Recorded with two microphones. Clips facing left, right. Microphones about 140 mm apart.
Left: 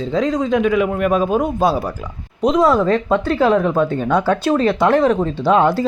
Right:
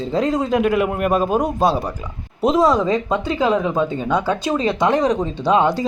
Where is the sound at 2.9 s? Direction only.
15° right (ahead or behind).